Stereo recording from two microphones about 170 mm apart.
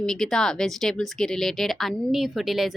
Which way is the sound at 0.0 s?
5° left (ahead or behind).